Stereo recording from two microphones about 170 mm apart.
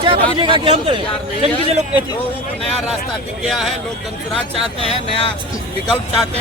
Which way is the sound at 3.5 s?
Centre (ahead or behind).